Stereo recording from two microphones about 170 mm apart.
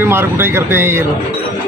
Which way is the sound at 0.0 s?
15° right (ahead or behind).